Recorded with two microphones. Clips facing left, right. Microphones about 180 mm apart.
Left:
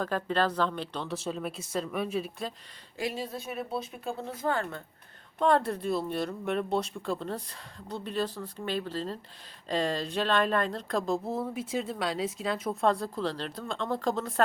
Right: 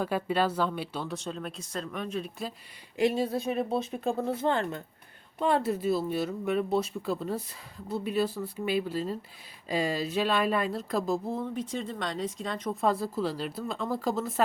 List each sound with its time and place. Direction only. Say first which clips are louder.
0.0 s speech: right 1 dB; 10° right (ahead or behind)
3.0 s speech: right 8 dB; 20° right (ahead or behind)
3.4 s speech: right 6 dB; 35° right (ahead or behind)
5.4 s speech: left 1 dB; 5° right (ahead or behind)